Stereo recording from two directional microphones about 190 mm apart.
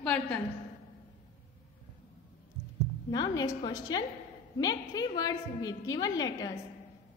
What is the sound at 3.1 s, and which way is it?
A woman's voice, 20° left (ahead or behind).